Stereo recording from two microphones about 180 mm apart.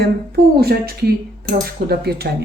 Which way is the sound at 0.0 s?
60° right (ahead or behind).